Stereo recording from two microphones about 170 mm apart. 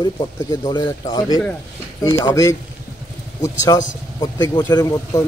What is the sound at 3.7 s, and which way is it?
A man's voice, 25° left (ahead or behind).